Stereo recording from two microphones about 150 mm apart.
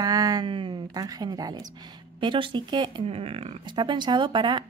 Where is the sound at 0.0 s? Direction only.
25° right (ahead or behind).